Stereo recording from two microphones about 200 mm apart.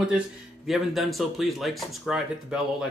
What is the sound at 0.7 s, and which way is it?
Speech, centre (ahead or behind).